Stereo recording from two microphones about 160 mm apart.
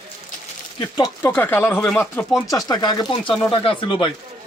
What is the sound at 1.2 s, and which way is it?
Speech, 10° left (ahead or behind).